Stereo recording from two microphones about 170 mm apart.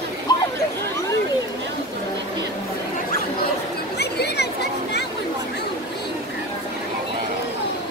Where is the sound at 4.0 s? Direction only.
75° left (ahead or behind).